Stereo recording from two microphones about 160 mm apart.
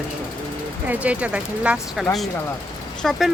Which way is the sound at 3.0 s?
Centre (ahead or behind).